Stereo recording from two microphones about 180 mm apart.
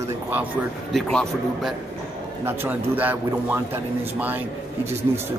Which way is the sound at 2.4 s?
10° right (ahead or behind).